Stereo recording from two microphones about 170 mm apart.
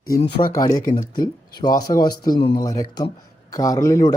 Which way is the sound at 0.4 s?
30° left (ahead or behind).